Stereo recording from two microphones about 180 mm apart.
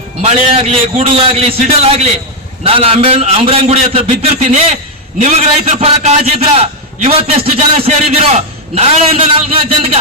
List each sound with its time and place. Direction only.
0.2 s a man's voice: 35° right (ahead or behind)